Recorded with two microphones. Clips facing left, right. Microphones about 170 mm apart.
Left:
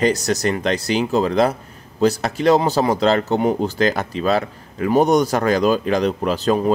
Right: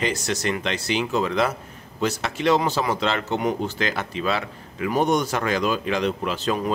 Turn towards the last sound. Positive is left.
turn(degrees=40)  # may be behind; listen again after turning